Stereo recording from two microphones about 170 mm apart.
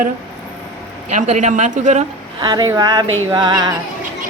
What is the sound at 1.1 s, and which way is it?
Speech, 45° right (ahead or behind).